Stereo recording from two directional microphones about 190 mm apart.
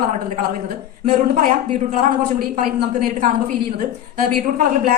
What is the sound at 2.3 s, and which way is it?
Speech, 50° right (ahead or behind).